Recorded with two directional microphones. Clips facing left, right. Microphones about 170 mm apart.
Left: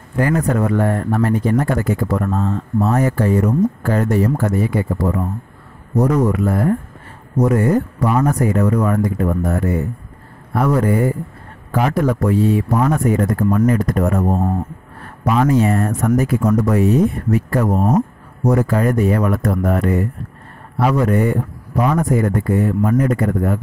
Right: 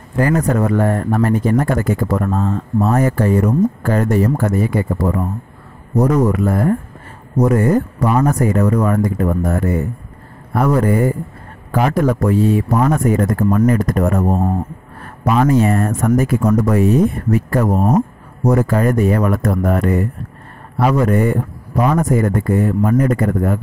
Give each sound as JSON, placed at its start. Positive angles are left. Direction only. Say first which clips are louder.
{"t": 0.2, "sound": "speech", "louder": "right 1 dB", "side_deg": -45}
{"t": 15.2, "sound": "speech", "louder": "right 1 dB", "side_deg": -45}